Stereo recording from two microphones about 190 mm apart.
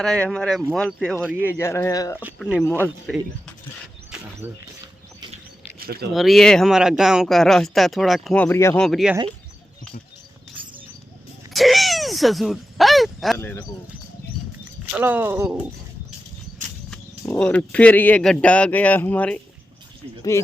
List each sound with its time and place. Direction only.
0.0 s speech: centre (ahead or behind)
2.4 s speech: centre (ahead or behind)
5.8 s speech: 55° right (ahead or behind)
6.1 s speech: centre (ahead or behind)
8.8 s speech: centre (ahead or behind)
11.5 s a sound: centre (ahead or behind)
14.9 s speech: 10° right (ahead or behind)
17.2 s speech: 5° left (ahead or behind)